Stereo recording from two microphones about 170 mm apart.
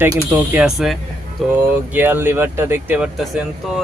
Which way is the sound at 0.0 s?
10° right (ahead or behind).